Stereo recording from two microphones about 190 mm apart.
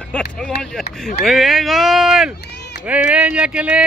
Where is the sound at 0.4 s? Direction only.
Centre (ahead or behind).